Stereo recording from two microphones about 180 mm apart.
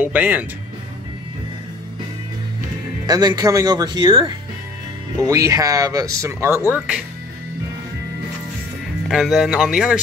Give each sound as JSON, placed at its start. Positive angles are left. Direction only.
{"t": 0.0, "sound": "speech", "side_deg": -10}
{"t": 3.1, "sound": "speech", "side_deg": -20}
{"t": 9.1, "sound": "speech", "side_deg": -5}